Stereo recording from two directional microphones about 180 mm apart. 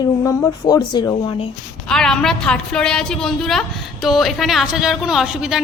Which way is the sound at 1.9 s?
5° left (ahead or behind).